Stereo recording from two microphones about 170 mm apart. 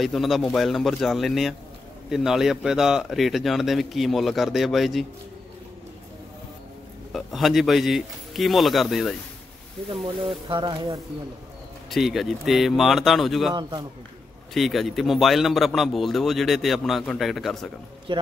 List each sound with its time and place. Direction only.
0.0 s a man's voice: centre (ahead or behind)
7.1 s a man's voice: centre (ahead or behind)
10.5 s speech: 25° right (ahead or behind)
11.9 s a man's voice: centre (ahead or behind)
13.6 s speech: 25° right (ahead or behind)
14.5 s a man's voice: centre (ahead or behind)
18.1 s speech: 30° right (ahead or behind)